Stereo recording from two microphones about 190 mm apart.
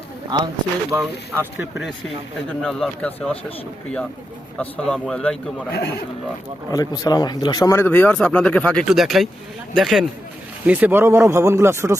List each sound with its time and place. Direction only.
0.3 s speech: 25° right (ahead or behind)
0.9 s speech: 10° right (ahead or behind)
4.5 s speech: 5° left (ahead or behind)
6.7 s speech: 20° left (ahead or behind); by 11.9 s 15° right (ahead or behind)